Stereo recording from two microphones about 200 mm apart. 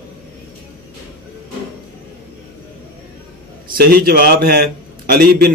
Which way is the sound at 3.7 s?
50° right (ahead or behind).